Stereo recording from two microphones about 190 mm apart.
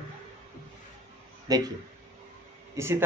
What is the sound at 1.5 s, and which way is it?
Speech, 20° right (ahead or behind).